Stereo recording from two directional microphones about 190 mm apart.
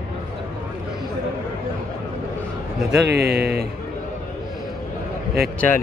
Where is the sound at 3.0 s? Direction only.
60° right (ahead or behind).